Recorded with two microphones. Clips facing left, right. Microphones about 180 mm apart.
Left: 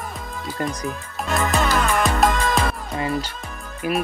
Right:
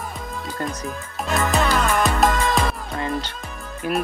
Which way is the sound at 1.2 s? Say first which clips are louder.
Right 1 dB; centre (ahead or behind).